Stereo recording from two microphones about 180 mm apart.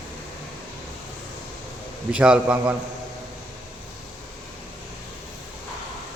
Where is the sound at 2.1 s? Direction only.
5° right (ahead or behind).